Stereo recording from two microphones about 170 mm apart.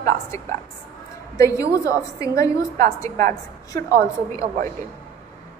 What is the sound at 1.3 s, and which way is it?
A woman's voice, 20° left (ahead or behind).